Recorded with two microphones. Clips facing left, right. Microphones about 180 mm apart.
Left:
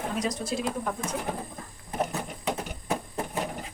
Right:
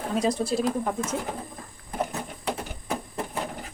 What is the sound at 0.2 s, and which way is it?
Speech, 30° right (ahead or behind).